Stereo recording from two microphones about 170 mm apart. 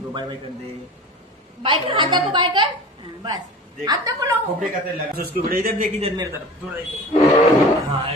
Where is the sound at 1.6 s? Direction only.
30° right (ahead or behind).